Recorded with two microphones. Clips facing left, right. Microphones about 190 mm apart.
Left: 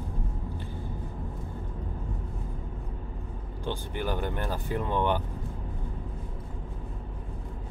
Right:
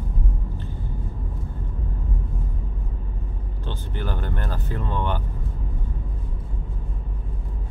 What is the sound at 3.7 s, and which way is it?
Speech, 15° left (ahead or behind).